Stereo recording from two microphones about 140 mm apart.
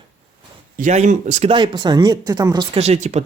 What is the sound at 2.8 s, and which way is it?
Speech, 50° right (ahead or behind).